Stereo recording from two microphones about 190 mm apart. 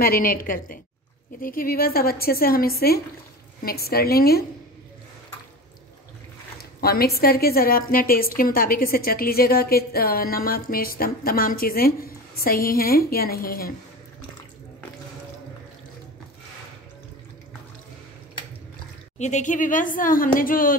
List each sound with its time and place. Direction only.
0.0 s a woman's voice: 50° left (ahead or behind)
6.6 s a woman's voice: 55° left (ahead or behind)
19.1 s a woman's voice: 40° left (ahead or behind)